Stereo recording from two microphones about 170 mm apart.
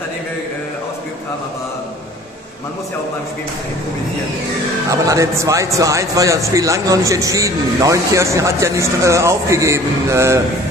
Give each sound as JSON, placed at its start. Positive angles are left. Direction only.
{"t": 4.9, "sound": "a man's voice", "side_deg": -20}